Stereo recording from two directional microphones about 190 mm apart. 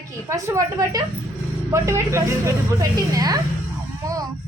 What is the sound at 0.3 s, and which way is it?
A woman's voice, 15° right (ahead or behind).